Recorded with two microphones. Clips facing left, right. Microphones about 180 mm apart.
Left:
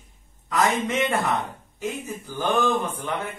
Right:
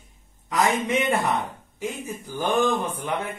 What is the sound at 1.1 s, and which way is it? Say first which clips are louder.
Speech: right 1 dB; 15° right (ahead or behind).